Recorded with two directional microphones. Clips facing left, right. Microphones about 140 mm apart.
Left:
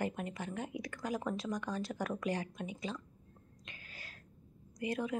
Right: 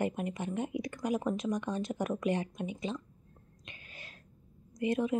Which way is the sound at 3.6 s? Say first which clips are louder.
Right 2 dB; 20° right (ahead or behind).